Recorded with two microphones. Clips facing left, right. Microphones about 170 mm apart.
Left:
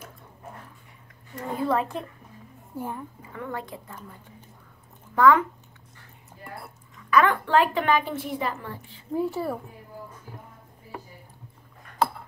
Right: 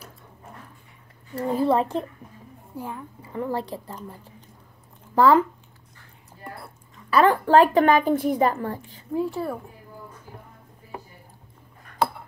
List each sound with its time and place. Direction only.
1.6 s a woman's voice: 30° right (ahead or behind)
2.7 s a woman's voice: centre (ahead or behind)
3.2 s a woman's voice: 30° right (ahead or behind)
7.1 s a woman's voice: 35° right (ahead or behind)
9.1 s speech: centre (ahead or behind)